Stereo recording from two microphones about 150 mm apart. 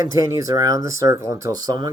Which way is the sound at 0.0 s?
20° right (ahead or behind).